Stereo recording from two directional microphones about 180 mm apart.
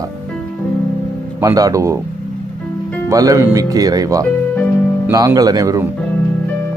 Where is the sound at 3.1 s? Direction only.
20° right (ahead or behind).